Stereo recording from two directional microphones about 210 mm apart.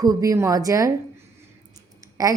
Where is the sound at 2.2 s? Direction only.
15° right (ahead or behind).